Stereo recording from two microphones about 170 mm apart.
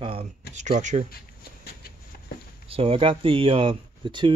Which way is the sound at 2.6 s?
35° right (ahead or behind).